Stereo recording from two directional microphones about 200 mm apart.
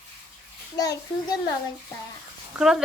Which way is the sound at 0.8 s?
20° left (ahead or behind).